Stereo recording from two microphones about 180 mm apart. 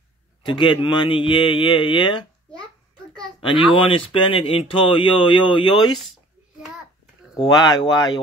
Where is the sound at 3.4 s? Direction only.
25° left (ahead or behind).